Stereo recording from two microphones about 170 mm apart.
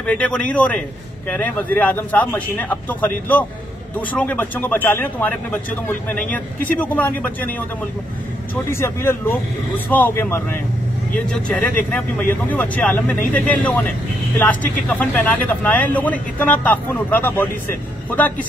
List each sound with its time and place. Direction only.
0.0 s speech: 5° left (ahead or behind)
8.6 s speech: 15° left (ahead or behind)